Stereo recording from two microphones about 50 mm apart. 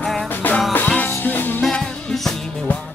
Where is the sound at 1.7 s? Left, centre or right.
Centre.